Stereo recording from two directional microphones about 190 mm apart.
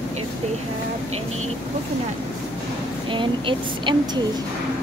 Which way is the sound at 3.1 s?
25° right (ahead or behind).